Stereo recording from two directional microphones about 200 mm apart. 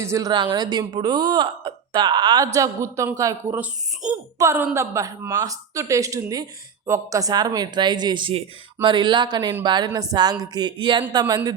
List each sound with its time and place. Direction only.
0.0 s speech: 15° right (ahead or behind)